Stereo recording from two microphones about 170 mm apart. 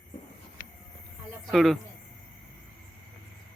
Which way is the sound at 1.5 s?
Centre (ahead or behind).